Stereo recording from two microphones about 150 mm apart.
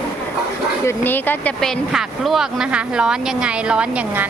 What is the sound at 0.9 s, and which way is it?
Speech, 15° left (ahead or behind).